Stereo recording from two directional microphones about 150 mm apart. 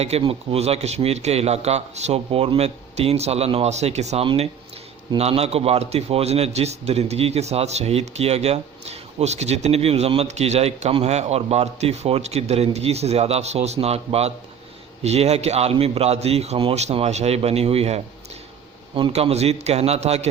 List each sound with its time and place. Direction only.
0.0 s a man's voice: 40° right (ahead or behind)
19.1 s a man's voice: 45° right (ahead or behind)